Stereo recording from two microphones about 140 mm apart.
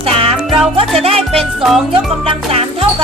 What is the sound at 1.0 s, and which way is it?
Speech, 45° right (ahead or behind).